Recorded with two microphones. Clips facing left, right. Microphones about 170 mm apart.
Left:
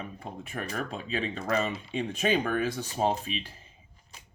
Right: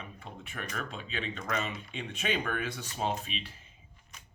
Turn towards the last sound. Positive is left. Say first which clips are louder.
# left 5 dB
turn(degrees=35)  # may be behind; listen again after turning